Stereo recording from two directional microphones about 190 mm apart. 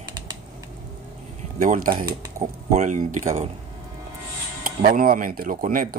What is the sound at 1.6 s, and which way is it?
Speech, 45° right (ahead or behind).